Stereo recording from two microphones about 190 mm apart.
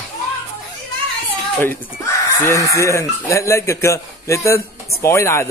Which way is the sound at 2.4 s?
15° left (ahead or behind).